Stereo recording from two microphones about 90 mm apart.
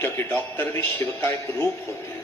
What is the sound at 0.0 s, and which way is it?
A man's voice, 25° left (ahead or behind).